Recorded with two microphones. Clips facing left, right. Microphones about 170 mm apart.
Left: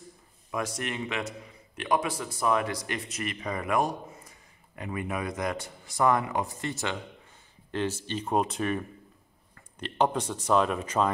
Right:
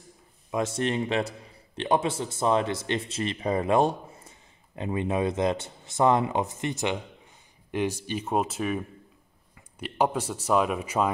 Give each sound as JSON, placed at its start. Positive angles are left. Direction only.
{"t": 0.5, "sound": "a man's voice", "side_deg": -25}